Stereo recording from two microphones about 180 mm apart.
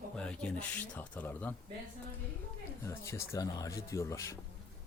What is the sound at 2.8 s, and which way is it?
Speech, 15° left (ahead or behind).